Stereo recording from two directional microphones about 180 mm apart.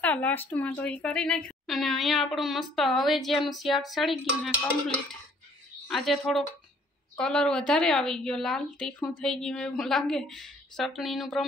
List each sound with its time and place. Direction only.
0.0 s speech: 10° left (ahead or behind)
5.9 s speech: centre (ahead or behind)